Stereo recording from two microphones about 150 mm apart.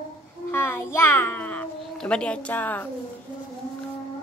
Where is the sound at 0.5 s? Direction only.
15° left (ahead or behind).